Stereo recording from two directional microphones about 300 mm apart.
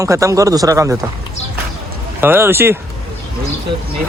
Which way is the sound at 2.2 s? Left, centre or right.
Centre.